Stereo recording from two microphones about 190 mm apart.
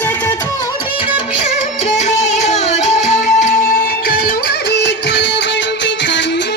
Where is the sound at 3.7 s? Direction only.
45° left (ahead or behind).